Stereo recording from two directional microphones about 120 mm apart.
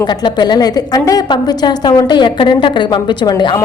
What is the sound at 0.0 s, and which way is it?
A woman's voice, 35° left (ahead or behind).